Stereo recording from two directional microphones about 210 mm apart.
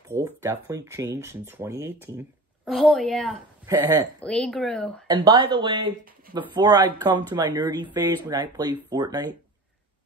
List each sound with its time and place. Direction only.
0.1 s speech: 15° right (ahead or behind); by 3.3 s centre (ahead or behind)
3.6 s speech: 15° right (ahead or behind)
4.2 s speech: 5° left (ahead or behind)
5.0 s speech: 20° right (ahead or behind)